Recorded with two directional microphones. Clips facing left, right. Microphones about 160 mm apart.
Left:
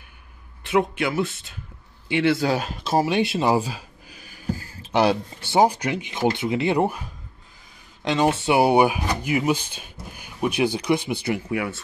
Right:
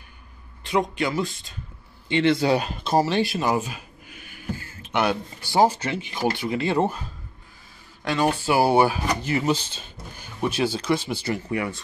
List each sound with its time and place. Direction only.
0.7 s speech: 5° left (ahead or behind)
3.1 s speech: 20° left (ahead or behind); by 11.8 s 5° left (ahead or behind)